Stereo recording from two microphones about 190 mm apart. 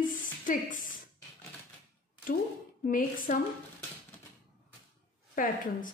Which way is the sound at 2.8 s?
45° left (ahead or behind).